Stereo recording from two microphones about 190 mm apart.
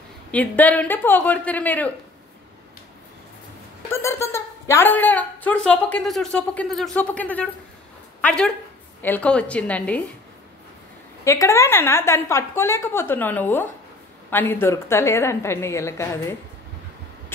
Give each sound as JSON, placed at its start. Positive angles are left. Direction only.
{"t": 0.3, "sound": "a woman's voice", "side_deg": 10}
{"t": 3.9, "sound": "a woman's voice", "side_deg": 15}
{"t": 11.2, "sound": "a woman's voice", "side_deg": 15}